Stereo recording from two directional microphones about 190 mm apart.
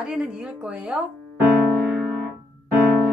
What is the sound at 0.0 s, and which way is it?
A woman's voice, 5° right (ahead or behind).